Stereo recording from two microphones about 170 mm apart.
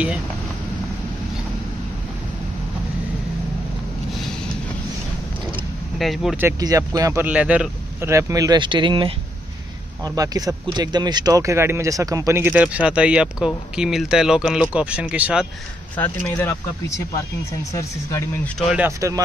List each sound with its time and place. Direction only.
5.9 s speech: centre (ahead or behind)
6.6 s speech: 20° right (ahead or behind)
16.0 s speech: 10° left (ahead or behind)
18.9 s speech: 20° right (ahead or behind)